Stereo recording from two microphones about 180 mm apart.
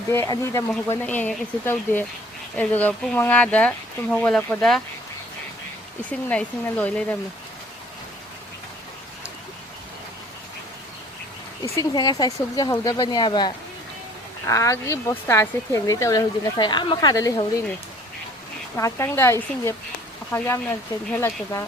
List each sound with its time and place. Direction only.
0.1 s speech: 15° left (ahead or behind)
6.1 s speech: 10° left (ahead or behind)
11.8 s speech: 20° left (ahead or behind)
18.8 s speech: 15° left (ahead or behind)